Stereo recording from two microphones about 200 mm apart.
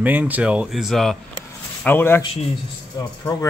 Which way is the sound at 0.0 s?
10° right (ahead or behind).